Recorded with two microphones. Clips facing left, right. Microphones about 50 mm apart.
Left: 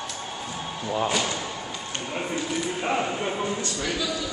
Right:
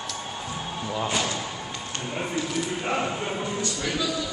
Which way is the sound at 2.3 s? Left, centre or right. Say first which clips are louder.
Even; centre.